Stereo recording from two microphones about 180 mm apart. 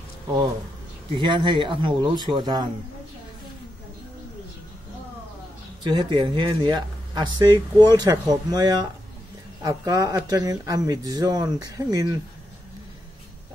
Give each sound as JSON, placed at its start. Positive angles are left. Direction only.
{"t": 1.1, "sound": "speech", "side_deg": -25}
{"t": 5.9, "sound": "speech", "side_deg": -25}